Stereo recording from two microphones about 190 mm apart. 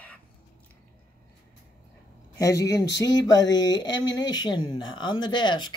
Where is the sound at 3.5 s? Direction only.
20° left (ahead or behind).